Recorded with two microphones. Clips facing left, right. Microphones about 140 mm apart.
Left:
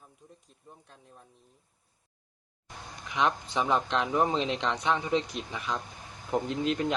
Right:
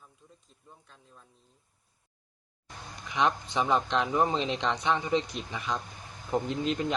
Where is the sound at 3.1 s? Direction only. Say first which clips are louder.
Right 1 dB; centre (ahead or behind).